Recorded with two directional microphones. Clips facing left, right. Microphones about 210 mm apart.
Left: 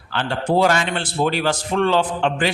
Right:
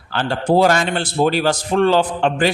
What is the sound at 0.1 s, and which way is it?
A man's voice, 40° right (ahead or behind).